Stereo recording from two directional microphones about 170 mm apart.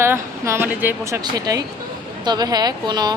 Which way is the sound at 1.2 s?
20° right (ahead or behind).